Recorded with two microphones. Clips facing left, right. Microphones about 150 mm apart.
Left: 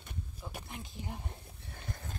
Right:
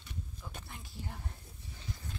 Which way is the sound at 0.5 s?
20° left (ahead or behind).